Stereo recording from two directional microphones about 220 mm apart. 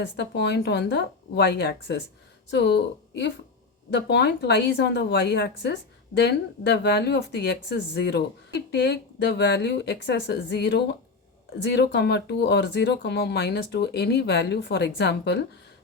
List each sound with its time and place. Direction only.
0.0 s speech: 50° left (ahead or behind)